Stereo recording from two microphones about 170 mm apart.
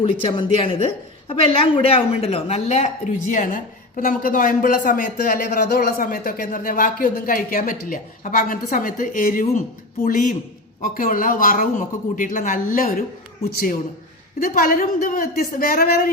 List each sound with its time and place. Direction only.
0.0 s a woman's voice: 30° left (ahead or behind); by 16.1 s 60° left (ahead or behind)